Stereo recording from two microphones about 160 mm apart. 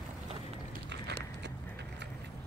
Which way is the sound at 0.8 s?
90° right.